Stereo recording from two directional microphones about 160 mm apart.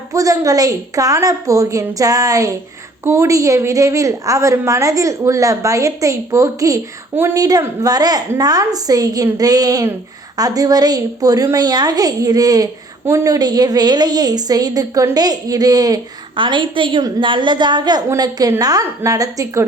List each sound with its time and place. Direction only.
0.1 s a woman's voice: 20° right (ahead or behind)